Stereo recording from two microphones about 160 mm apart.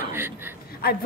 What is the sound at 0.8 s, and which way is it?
Speech, 70° left (ahead or behind).